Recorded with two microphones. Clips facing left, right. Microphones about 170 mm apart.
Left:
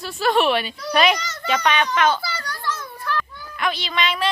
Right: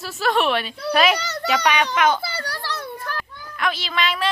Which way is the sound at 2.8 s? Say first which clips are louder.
Left 3 dB; 35° right (ahead or behind).